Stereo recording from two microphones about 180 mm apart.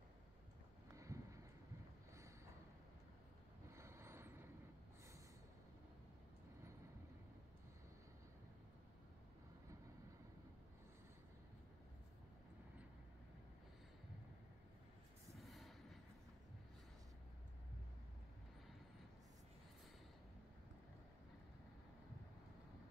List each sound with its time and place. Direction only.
0.9 s a sound: 15° right (ahead or behind)
3.7 s vehicle: 15° right (ahead or behind)
15.3 s vehicle: centre (ahead or behind)